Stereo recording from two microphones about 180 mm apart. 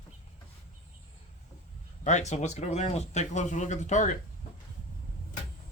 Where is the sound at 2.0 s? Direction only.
40° left (ahead or behind).